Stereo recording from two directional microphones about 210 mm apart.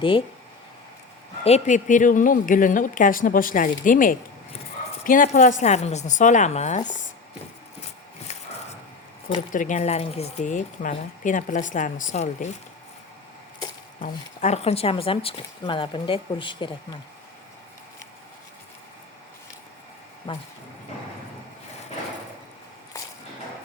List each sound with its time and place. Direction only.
1.5 s speech: 35° left (ahead or behind)
9.5 s speech: 35° left (ahead or behind)
14.0 s speech: 30° left (ahead or behind)
20.3 s speech: 25° left (ahead or behind)